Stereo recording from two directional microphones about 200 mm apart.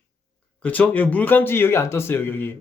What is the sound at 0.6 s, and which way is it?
Speech, 5° left (ahead or behind).